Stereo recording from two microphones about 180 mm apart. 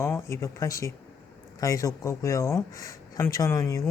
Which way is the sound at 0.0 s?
15° left (ahead or behind).